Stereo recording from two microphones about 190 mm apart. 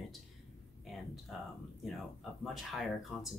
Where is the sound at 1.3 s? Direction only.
Centre (ahead or behind).